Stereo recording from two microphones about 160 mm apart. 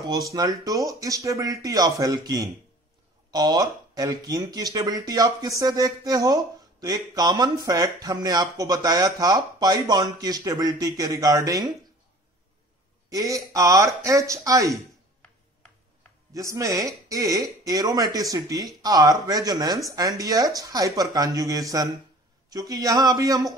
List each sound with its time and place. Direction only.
0.1 s speech: 20° right (ahead or behind)
13.1 s speech: 20° right (ahead or behind)
16.3 s speech: 20° right (ahead or behind)